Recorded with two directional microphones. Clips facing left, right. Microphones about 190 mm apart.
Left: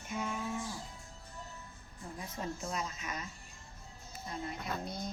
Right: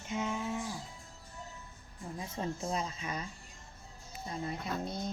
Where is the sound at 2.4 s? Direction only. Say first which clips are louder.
Right 3 dB; 30° right (ahead or behind).